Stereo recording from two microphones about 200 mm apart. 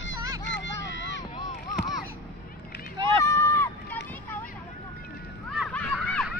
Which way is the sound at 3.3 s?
10° left (ahead or behind).